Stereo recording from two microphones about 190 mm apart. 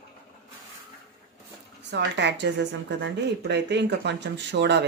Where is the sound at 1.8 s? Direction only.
65° right (ahead or behind).